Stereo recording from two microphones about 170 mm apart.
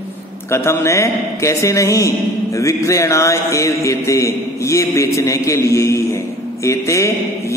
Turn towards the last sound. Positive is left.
turn(degrees=15)  # may be behind; listen again after turning